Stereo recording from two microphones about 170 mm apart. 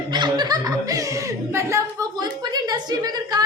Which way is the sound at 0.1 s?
25° right (ahead or behind).